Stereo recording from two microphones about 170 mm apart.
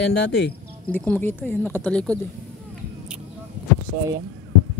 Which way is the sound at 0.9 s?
10° left (ahead or behind).